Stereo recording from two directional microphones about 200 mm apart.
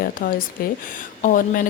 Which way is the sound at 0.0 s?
45° left (ahead or behind).